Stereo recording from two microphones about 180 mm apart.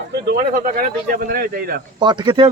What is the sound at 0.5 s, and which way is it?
Speech, 50° right (ahead or behind).